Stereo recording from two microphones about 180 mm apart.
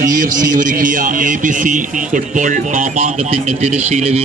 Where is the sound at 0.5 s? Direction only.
50° right (ahead or behind).